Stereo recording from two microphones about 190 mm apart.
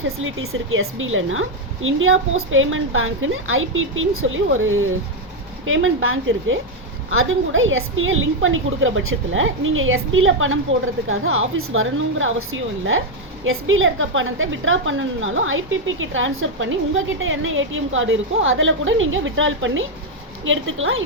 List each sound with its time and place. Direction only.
0.0 s a woman's voice: 90° right